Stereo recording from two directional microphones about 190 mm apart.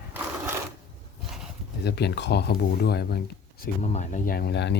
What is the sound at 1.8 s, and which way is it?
Speech, 60° left (ahead or behind).